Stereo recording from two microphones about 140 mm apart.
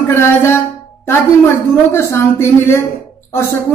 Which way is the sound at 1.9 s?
15° left (ahead or behind).